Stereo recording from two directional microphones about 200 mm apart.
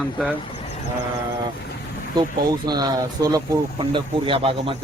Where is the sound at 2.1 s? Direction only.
20° right (ahead or behind).